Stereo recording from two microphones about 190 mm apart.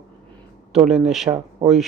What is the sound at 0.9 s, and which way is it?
Speech, centre (ahead or behind).